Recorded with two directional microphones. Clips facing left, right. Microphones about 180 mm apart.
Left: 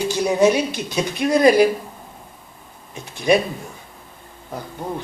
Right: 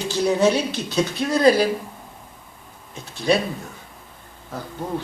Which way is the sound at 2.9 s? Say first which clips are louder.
Left 3 dB; 15° left (ahead or behind).